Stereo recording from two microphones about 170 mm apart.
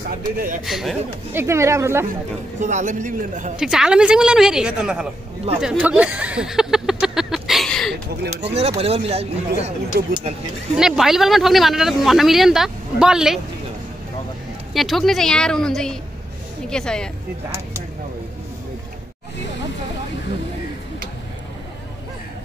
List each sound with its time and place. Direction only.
0.7 s speech: centre (ahead or behind)
1.3 s speech: 15° right (ahead or behind)
2.6 s a man's voice: 45° right (ahead or behind)
3.5 s speech: 5° right (ahead or behind)
5.6 s a sound: 5° right (ahead or behind)
8.3 s speech: 40° right (ahead or behind)
9.9 s speech: 60° right (ahead or behind)
10.8 s speech: centre (ahead or behind)
14.7 s speech: centre (ahead or behind)